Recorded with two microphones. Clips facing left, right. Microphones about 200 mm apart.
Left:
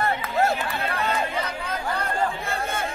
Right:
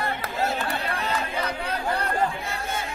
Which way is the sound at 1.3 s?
35° right (ahead or behind).